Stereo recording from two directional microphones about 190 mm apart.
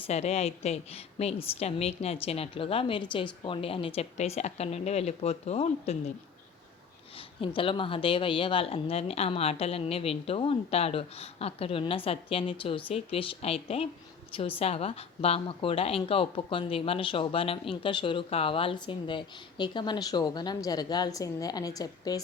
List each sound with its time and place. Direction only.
0.1 s a woman's voice: 35° left (ahead or behind)
7.4 s a woman's voice: 25° left (ahead or behind)